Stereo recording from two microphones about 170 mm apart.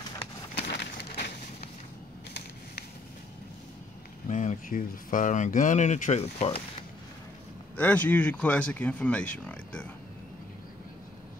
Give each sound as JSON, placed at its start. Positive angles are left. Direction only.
{"t": 0.6, "sound": "a sound", "side_deg": 80}
{"t": 4.3, "sound": "speech", "side_deg": 50}
{"t": 7.7, "sound": "speech", "side_deg": 10}